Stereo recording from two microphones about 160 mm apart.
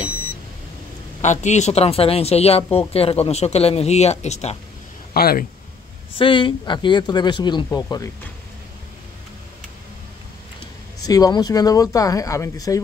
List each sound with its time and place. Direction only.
1.2 s speech: 50° left (ahead or behind)
5.1 s speech: 70° left (ahead or behind)
6.1 s speech: 30° left (ahead or behind)
11.1 s speech: 25° left (ahead or behind)